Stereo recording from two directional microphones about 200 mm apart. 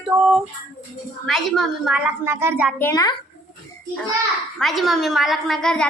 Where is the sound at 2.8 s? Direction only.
15° left (ahead or behind).